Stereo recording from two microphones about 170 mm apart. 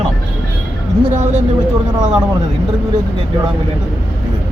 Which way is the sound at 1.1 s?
45° right (ahead or behind).